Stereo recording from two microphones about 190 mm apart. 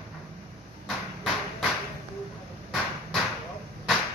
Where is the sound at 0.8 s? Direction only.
5° right (ahead or behind).